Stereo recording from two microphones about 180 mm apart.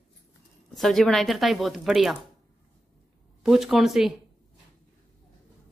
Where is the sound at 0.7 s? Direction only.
Centre (ahead or behind).